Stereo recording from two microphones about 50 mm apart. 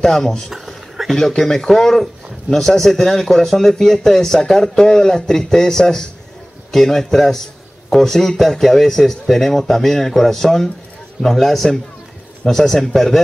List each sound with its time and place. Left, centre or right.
0.0 s speech: centre
0.5 s a sound: centre
1.4 s speech: centre